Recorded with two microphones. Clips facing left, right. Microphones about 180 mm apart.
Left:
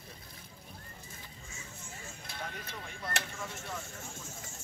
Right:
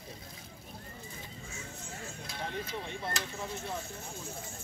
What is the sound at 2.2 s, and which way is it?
Speech, 60° left (ahead or behind).